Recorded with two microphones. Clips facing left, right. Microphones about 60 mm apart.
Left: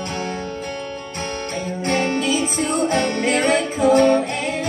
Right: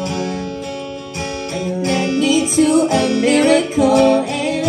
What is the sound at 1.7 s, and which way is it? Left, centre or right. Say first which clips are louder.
Music: right 3 dB; left.